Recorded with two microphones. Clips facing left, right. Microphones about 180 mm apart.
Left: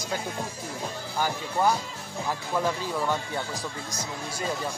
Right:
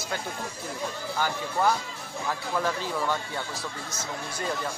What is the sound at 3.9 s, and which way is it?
Speech, 10° left (ahead or behind).